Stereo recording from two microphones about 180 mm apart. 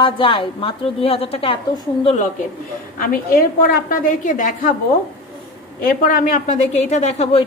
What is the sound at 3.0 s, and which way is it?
A woman's voice, 55° left (ahead or behind).